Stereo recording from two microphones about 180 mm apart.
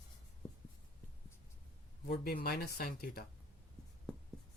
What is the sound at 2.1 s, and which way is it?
Speech, 60° left (ahead or behind).